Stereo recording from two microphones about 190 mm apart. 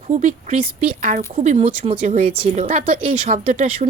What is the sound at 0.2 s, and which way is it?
Speech, 40° right (ahead or behind).